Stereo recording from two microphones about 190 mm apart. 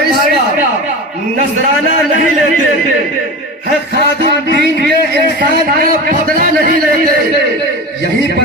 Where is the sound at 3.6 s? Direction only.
55° right (ahead or behind).